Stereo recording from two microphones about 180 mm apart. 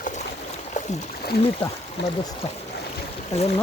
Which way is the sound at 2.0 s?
75° left (ahead or behind).